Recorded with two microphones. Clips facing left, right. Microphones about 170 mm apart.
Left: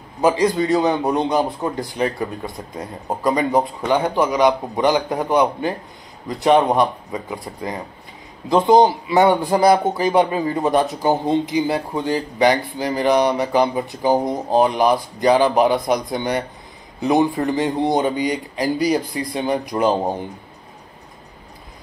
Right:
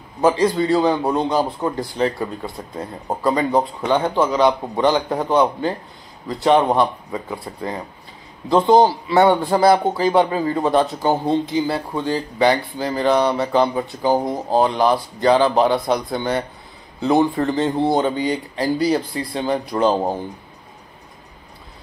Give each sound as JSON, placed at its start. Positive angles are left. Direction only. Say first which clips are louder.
{"t": 0.2, "sound": "a man's voice", "louder": "even", "side_deg": 15}